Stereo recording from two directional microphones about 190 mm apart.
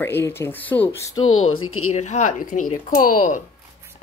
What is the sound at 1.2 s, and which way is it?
Speech, 90° left.